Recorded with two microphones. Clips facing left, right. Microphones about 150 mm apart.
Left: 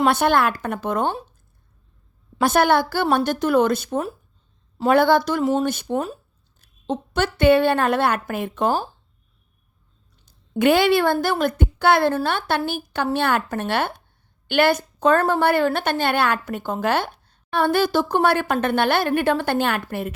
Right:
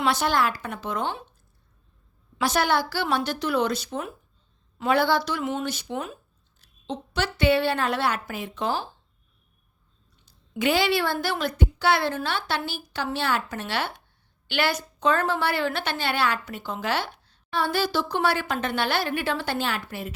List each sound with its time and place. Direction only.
0.0 s a woman's voice: 55° left (ahead or behind)
2.4 s a woman's voice: 55° left (ahead or behind)
10.2 s a woman's voice: 55° left (ahead or behind)